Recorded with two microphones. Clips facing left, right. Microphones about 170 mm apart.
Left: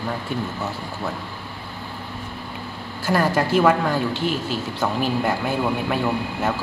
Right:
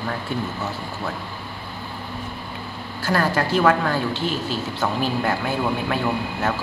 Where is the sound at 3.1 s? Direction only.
15° left (ahead or behind).